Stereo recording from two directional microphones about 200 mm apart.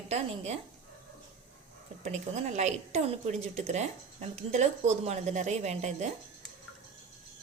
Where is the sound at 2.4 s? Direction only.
35° right (ahead or behind).